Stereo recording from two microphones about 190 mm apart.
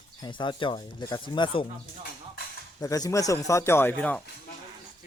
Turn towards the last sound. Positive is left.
turn(degrees=5)  # may be behind; listen again after turning